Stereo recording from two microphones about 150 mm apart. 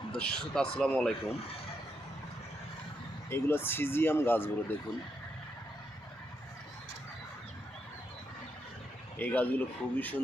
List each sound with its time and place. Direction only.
0.1 s a man's voice: 5° left (ahead or behind)
3.2 s speech: 15° left (ahead or behind)
9.1 s speech: 10° left (ahead or behind)